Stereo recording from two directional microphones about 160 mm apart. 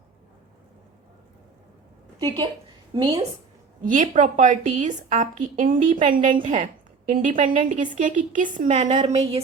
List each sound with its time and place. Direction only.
2.2 s a woman's voice: 25° right (ahead or behind)
3.8 s a woman's voice: 50° right (ahead or behind)